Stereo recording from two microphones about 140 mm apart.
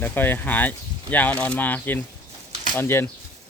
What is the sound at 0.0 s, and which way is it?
Speech, 15° left (ahead or behind).